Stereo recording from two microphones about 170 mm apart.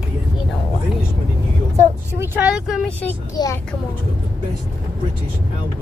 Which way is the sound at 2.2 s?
10° right (ahead or behind).